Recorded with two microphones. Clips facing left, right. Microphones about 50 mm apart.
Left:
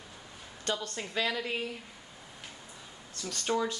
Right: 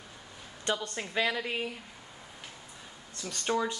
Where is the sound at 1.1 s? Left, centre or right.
Centre.